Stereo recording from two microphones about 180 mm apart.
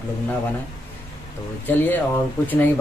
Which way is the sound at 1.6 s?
10° left (ahead or behind).